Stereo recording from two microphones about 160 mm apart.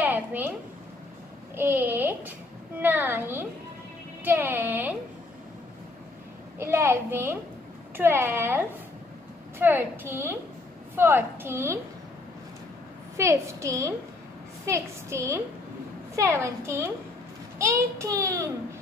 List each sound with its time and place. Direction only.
0.0 s a sound: 10° right (ahead or behind)
1.5 s a child's voice: 15° right (ahead or behind)
6.6 s a woman's voice: 15° right (ahead or behind)
13.2 s a child's voice: 20° right (ahead or behind)